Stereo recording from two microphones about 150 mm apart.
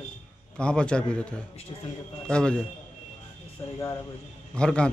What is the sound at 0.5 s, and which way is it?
A man's voice, 5° left (ahead or behind).